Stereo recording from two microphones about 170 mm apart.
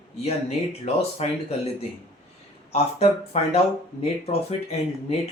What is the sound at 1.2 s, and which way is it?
Speech, 40° left (ahead or behind).